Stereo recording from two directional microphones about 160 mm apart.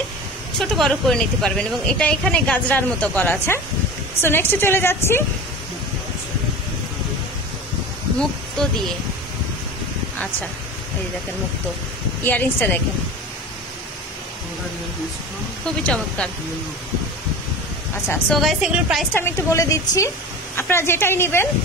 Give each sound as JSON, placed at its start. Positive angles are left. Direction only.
{"t": 0.6, "sound": "speech", "side_deg": 0}
{"t": 8.2, "sound": "speech", "side_deg": 5}
{"t": 12.2, "sound": "speech", "side_deg": 10}
{"t": 15.8, "sound": "a woman's voice", "side_deg": 5}
{"t": 18.3, "sound": "a woman's voice", "side_deg": 0}
{"t": 19.1, "sound": "a woman's voice", "side_deg": 15}